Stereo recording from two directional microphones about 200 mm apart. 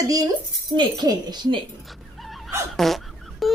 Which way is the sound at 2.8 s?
Centre (ahead or behind).